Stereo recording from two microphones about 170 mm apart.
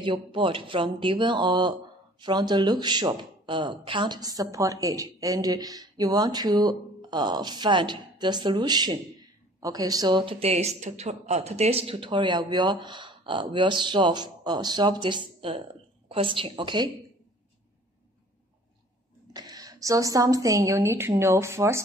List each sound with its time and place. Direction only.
0.0 s a woman's voice: 30° right (ahead or behind)
19.3 s speech: 20° right (ahead or behind)